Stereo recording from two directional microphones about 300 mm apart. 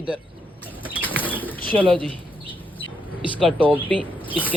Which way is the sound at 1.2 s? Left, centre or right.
Centre.